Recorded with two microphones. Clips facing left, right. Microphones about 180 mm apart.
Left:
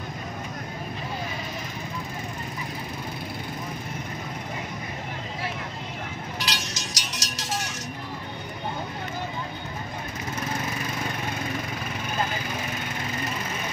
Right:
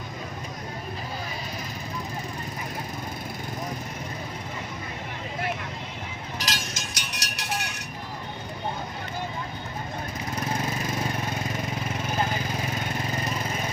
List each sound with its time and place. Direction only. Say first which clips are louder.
6.4 s music: right 1 dB; 50° right (ahead or behind)